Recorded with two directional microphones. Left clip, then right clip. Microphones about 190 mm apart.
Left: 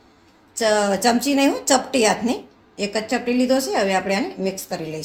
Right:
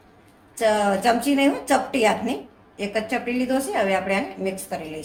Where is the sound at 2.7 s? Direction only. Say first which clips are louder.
Left 2 dB; 45° left (ahead or behind).